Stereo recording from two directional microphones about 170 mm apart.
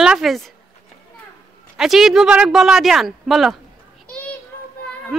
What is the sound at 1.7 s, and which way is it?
Speech, centre (ahead or behind).